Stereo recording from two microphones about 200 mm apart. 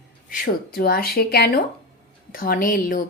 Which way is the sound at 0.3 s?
50° left (ahead or behind).